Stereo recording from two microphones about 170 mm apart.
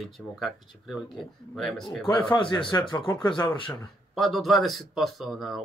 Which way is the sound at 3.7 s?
Centre (ahead or behind).